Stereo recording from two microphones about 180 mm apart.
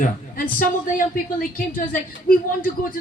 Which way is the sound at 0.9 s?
50° left (ahead or behind).